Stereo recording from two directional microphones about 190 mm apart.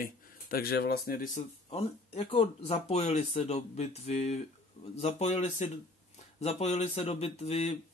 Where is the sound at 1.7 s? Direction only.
30° left (ahead or behind).